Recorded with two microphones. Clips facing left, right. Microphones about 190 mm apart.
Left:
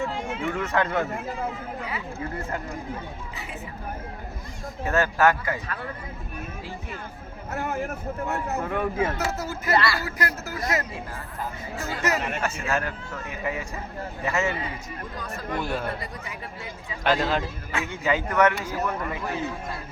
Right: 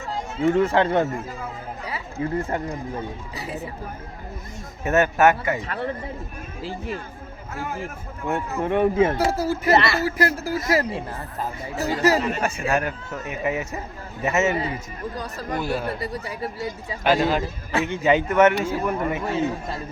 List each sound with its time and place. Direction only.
0.0 s speech: 40° right (ahead or behind)
4.9 s speech: 20° right (ahead or behind)
7.5 s speech: 55° left (ahead or behind)
8.3 s speech: 25° right (ahead or behind)
12.4 s speech: 15° right (ahead or behind)
15.1 s speech: 35° right (ahead or behind)
15.6 s speech: 5° right (ahead or behind)
16.0 s speech: 35° right (ahead or behind)
17.0 s speech: 5° right (ahead or behind)
17.4 s speech: 35° right (ahead or behind)
17.8 s speech: 20° right (ahead or behind)